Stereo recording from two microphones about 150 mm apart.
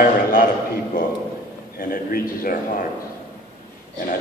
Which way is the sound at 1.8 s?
75° left (ahead or behind).